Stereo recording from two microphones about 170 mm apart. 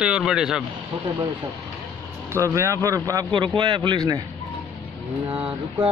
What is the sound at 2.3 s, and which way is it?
A man's voice, 15° right (ahead or behind).